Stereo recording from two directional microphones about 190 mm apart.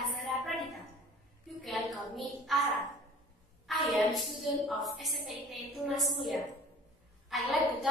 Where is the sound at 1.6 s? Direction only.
Centre (ahead or behind).